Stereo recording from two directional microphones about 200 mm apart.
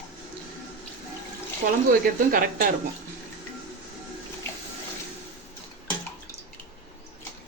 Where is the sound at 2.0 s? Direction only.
45° right (ahead or behind).